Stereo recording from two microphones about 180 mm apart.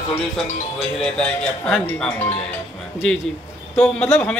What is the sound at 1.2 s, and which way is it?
Speech, 5° left (ahead or behind).